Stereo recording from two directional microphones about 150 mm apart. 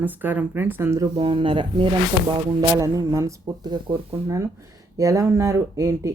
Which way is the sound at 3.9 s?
35° right (ahead or behind).